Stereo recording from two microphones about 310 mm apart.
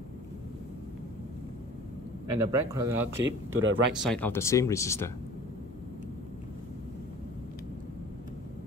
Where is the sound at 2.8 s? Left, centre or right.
Centre.